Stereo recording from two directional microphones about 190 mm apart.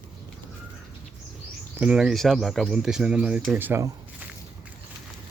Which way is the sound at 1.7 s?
5° right (ahead or behind).